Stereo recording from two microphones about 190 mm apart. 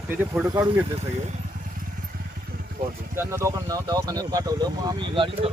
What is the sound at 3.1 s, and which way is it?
Speech, 15° right (ahead or behind).